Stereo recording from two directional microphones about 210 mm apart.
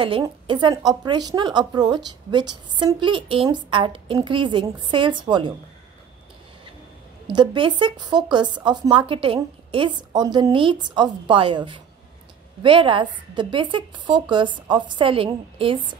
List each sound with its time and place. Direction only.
0.0 s a woman's voice: 25° right (ahead or behind)
7.2 s a woman's voice: 25° right (ahead or behind)